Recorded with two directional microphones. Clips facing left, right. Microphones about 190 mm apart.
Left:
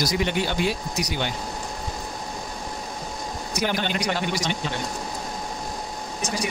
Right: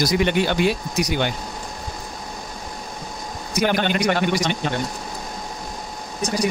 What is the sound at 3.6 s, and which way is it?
Speech, 60° right (ahead or behind).